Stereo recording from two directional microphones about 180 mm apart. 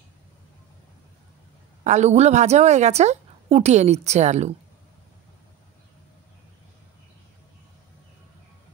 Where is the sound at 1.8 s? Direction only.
40° right (ahead or behind).